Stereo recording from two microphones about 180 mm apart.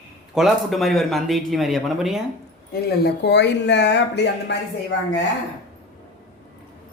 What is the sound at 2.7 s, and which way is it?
Speech, 65° left (ahead or behind).